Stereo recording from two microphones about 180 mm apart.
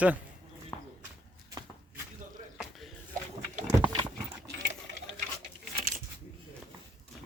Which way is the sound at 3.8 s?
25° right (ahead or behind).